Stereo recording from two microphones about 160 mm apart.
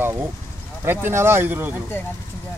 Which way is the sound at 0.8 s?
15° right (ahead or behind).